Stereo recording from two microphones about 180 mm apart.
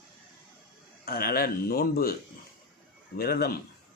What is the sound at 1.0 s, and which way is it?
Speech, 60° left (ahead or behind).